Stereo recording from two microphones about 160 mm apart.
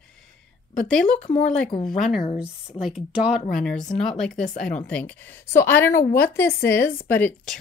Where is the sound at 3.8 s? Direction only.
50° left (ahead or behind).